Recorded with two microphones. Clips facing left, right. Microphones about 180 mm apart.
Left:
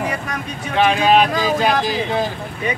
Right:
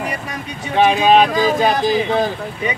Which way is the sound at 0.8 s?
20° right (ahead or behind).